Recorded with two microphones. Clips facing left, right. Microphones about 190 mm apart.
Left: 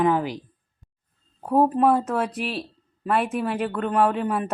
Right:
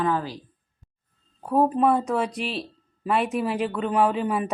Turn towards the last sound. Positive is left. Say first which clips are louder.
# even
turn(degrees=0)  # may be behind; listen again after turning